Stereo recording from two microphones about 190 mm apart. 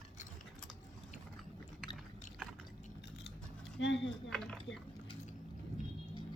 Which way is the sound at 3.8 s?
70° left (ahead or behind).